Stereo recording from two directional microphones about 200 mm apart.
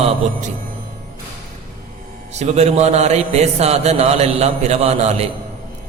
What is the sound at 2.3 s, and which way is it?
A man's voice, 35° right (ahead or behind).